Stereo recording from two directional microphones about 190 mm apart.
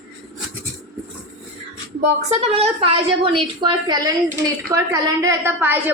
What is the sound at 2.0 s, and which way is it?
A woman's voice, 35° right (ahead or behind).